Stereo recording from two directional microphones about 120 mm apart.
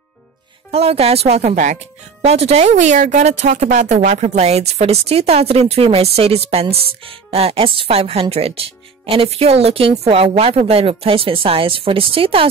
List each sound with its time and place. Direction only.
0.7 s a woman's voice: 60° right (ahead or behind); by 1.8 s 85° right
2.2 s a woman's voice: 65° right (ahead or behind)